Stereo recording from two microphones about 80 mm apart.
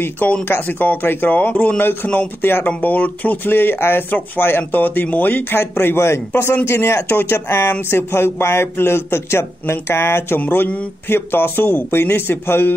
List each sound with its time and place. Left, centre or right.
0.0 s speech: left